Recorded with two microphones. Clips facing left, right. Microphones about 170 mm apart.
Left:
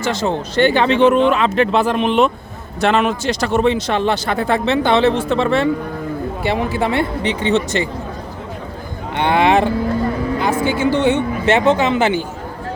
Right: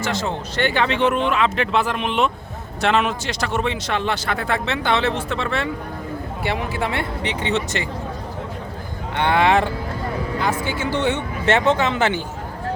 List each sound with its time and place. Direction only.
0.3 s speech: 35° left (ahead or behind)
9.1 s speech: 15° left (ahead or behind)